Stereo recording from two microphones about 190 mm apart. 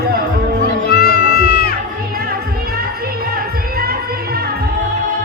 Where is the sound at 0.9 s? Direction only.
55° left (ahead or behind).